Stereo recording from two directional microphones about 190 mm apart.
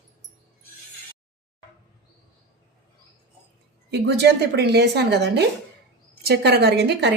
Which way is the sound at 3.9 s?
60° right (ahead or behind).